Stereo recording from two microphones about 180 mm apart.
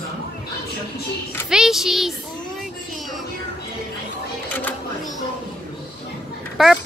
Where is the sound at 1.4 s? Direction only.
5° right (ahead or behind).